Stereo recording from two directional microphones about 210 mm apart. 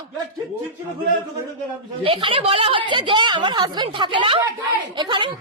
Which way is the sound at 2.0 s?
25° right (ahead or behind).